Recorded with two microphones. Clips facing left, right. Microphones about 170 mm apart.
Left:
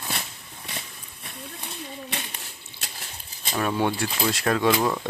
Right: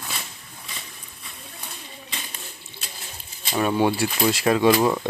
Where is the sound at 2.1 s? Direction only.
75° left (ahead or behind).